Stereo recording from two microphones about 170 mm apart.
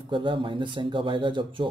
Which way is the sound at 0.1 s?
30° right (ahead or behind).